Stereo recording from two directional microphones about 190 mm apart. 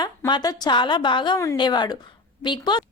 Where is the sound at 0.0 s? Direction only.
25° left (ahead or behind).